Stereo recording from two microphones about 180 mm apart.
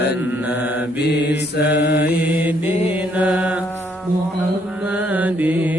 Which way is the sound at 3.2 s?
5° right (ahead or behind).